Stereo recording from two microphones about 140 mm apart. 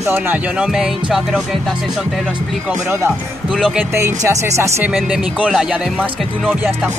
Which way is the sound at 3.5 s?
Centre (ahead or behind).